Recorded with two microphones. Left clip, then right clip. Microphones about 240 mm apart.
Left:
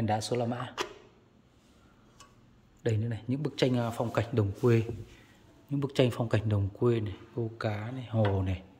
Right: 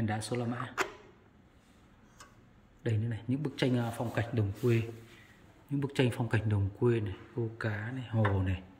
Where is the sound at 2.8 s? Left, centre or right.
Centre.